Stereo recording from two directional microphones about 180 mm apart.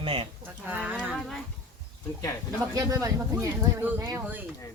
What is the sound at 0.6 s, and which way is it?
Speech, 10° right (ahead or behind).